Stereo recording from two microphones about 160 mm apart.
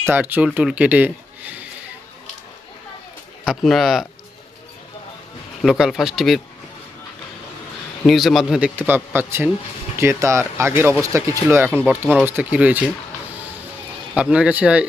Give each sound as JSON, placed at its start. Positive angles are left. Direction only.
{"t": 0.0, "sound": "speech", "side_deg": -10}
{"t": 3.4, "sound": "speech", "side_deg": 0}
{"t": 5.6, "sound": "speech", "side_deg": -5}
{"t": 8.0, "sound": "speech", "side_deg": 0}
{"t": 14.2, "sound": "speech", "side_deg": -5}